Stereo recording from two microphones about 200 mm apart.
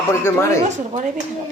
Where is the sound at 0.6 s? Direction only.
35° right (ahead or behind).